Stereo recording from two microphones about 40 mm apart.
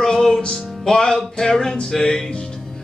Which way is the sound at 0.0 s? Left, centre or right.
Centre.